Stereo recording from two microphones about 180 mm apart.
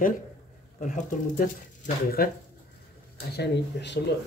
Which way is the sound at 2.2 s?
60° left (ahead or behind).